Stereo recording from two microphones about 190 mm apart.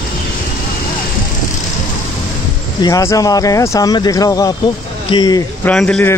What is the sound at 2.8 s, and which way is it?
Speech, 15° left (ahead or behind).